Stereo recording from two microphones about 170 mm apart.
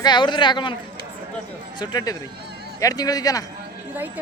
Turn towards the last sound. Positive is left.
turn(degrees=20)  # may be behind; listen again after turning